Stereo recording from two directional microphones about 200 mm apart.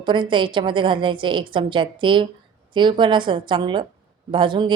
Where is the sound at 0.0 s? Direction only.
25° right (ahead or behind).